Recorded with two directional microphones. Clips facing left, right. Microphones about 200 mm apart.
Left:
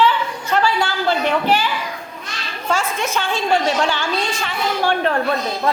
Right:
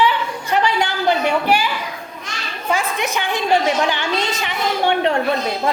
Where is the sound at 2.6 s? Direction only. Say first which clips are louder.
Even; 15° right (ahead or behind).